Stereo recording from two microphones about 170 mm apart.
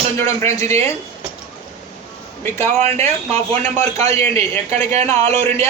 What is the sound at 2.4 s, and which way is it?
Speech, 15° left (ahead or behind).